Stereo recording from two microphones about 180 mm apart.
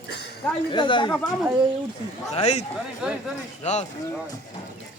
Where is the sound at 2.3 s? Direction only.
35° left (ahead or behind).